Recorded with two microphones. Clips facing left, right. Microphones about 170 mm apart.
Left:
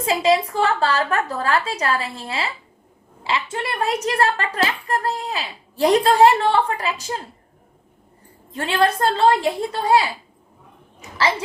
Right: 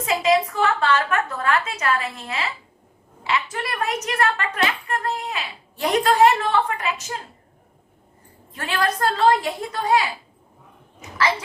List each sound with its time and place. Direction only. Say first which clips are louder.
0.0 s a woman's voice: left 1 dB; 30° left (ahead or behind)
8.5 s a woman's voice: left 4 dB; 30° left (ahead or behind)